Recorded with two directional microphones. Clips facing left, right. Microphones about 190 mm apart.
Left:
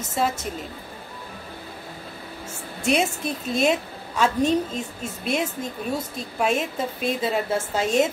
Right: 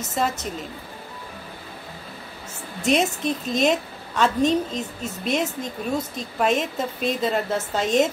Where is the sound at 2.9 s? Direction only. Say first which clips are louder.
Right 2 dB; 5° left (ahead or behind).